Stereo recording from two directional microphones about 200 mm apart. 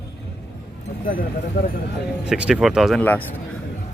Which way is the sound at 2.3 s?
5° right (ahead or behind).